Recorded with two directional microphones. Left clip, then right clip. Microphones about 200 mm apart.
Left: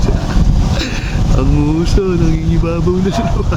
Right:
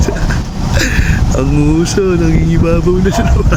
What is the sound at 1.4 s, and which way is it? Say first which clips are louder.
Speech: right 3 dB; 5° right (ahead or behind).